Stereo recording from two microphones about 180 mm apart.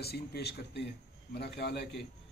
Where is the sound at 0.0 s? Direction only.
60° left (ahead or behind).